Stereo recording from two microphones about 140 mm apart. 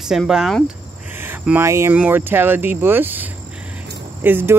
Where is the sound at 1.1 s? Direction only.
15° right (ahead or behind).